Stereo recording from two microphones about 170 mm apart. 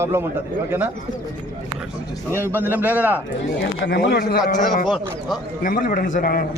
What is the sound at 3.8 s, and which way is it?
Speech, 90° left.